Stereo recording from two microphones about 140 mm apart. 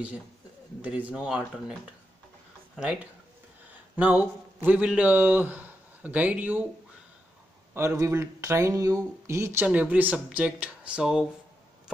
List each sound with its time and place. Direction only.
0.8 s a man's voice: 10° right (ahead or behind)
8.0 s speech: 20° right (ahead or behind); by 11.2 s 5° right (ahead or behind)